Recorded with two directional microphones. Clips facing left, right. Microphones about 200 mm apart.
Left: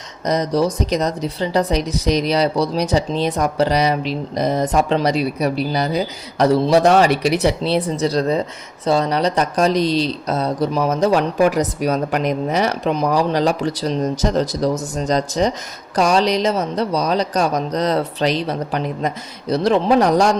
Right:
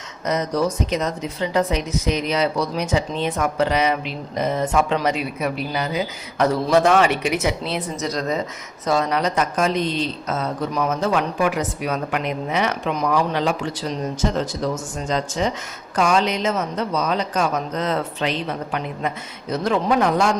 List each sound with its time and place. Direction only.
0.3 s speech: 35° left (ahead or behind)